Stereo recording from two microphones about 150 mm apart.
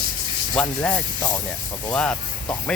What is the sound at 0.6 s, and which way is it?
Speech, 10° left (ahead or behind).